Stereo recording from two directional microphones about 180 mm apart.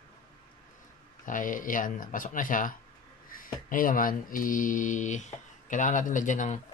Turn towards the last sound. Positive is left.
turn(degrees=45)  # may be behind; listen again after turning